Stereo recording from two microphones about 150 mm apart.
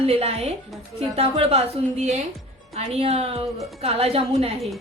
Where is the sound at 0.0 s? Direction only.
40° right (ahead or behind).